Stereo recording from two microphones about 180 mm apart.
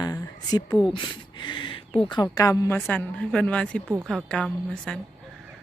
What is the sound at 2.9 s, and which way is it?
A woman's voice, 5° left (ahead or behind).